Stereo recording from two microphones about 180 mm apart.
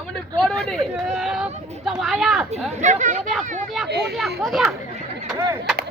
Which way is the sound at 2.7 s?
40° right (ahead or behind).